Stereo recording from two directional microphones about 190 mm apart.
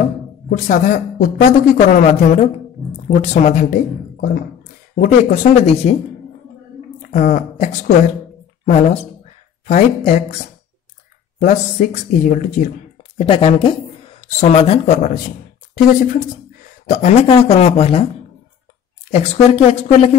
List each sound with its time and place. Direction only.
0.5 s speech: 45° left (ahead or behind)
4.9 s speech: 45° left (ahead or behind)
7.0 s a woman's voice: 40° left (ahead or behind)
11.3 s speech: 40° left (ahead or behind)
13.2 s speech: 30° left (ahead or behind)
15.7 s speech: 45° left (ahead or behind)
16.9 s speech: 35° left (ahead or behind)
19.0 s speech: 35° left (ahead or behind)